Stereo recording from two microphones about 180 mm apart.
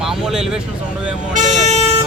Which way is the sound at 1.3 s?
45° right (ahead or behind).